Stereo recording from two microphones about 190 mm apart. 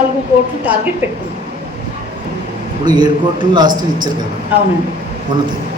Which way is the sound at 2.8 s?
25° right (ahead or behind).